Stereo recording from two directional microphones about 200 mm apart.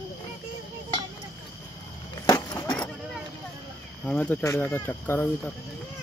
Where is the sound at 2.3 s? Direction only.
20° left (ahead or behind).